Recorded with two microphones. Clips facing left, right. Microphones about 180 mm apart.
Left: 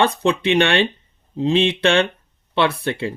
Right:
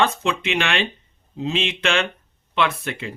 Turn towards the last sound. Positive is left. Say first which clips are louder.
# left 4 dB
turn(degrees=30)  # may be behind; listen again after turning